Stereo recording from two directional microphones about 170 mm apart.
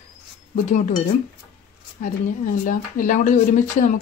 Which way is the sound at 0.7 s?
45° left (ahead or behind).